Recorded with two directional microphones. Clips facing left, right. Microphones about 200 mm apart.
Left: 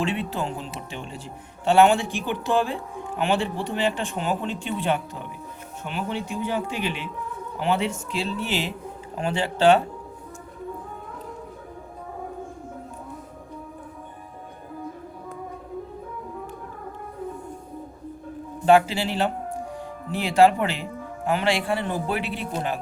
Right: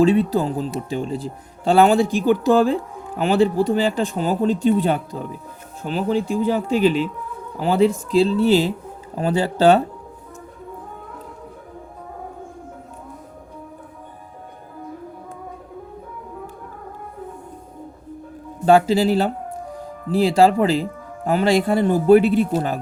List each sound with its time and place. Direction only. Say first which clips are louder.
0.0 s speech: right 11 dB; 40° right (ahead or behind)
18.6 s speech: right 4 dB; 40° right (ahead or behind)